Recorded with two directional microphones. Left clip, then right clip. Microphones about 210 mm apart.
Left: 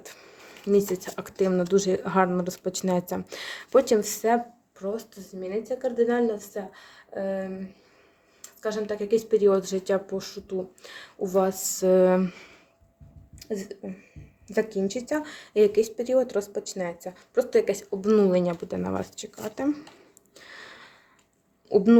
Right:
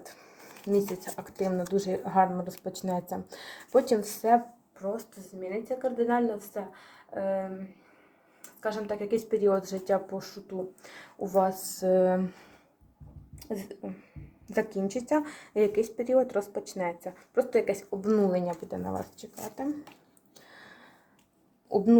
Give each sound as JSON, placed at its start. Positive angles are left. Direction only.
{"t": 0.0, "sound": "a sound", "side_deg": 25}
{"t": 1.1, "sound": "speech", "side_deg": 30}
{"t": 4.8, "sound": "speech", "side_deg": 20}
{"t": 8.6, "sound": "speech", "side_deg": 15}
{"t": 13.4, "sound": "speech", "side_deg": 10}
{"t": 20.5, "sound": "a sound", "side_deg": 35}